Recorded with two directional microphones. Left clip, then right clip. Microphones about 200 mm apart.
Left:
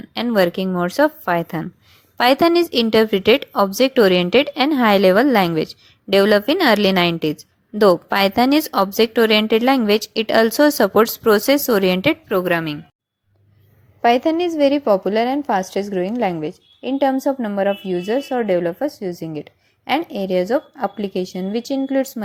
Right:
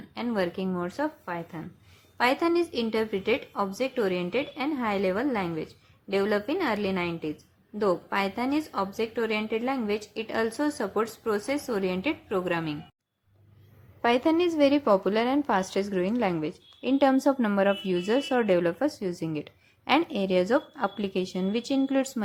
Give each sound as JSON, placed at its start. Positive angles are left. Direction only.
{"t": 0.1, "sound": "a woman's voice", "side_deg": 35}
{"t": 14.0, "sound": "a woman's voice", "side_deg": 20}